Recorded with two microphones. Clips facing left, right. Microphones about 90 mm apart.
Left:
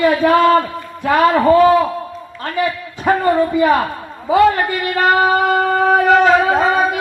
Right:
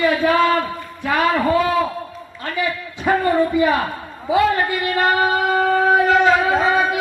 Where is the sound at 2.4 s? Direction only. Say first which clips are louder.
Left 4 dB; 45° left (ahead or behind).